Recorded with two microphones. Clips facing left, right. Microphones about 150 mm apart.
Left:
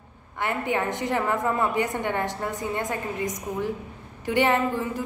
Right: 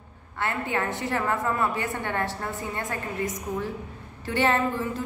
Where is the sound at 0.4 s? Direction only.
15° left (ahead or behind).